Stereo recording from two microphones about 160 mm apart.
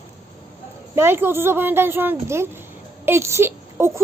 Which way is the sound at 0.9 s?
15° right (ahead or behind).